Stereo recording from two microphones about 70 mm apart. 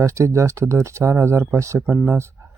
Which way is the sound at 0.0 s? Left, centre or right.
Right.